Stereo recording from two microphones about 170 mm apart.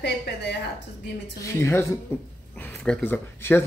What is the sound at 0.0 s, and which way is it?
Speech, 85° left.